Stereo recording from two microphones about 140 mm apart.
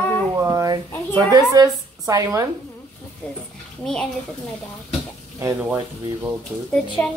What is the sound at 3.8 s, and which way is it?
Speech, 5° left (ahead or behind).